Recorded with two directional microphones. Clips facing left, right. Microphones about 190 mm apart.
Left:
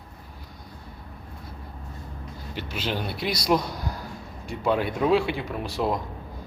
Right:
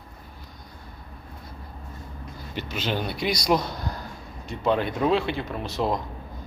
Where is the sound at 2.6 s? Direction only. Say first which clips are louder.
Right 2 dB; 5° left (ahead or behind).